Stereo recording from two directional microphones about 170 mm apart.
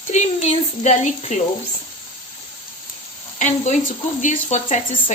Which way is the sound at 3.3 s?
45° left (ahead or behind).